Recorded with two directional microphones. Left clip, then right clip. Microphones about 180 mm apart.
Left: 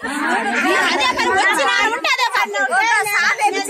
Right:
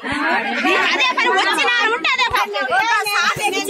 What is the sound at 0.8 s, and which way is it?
A woman's voice, 45° left (ahead or behind).